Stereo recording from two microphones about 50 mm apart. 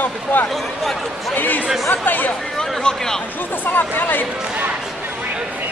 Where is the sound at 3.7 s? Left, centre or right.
Left.